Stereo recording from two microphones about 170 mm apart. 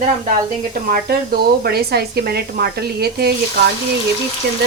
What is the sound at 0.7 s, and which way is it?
Speech, 60° right (ahead or behind).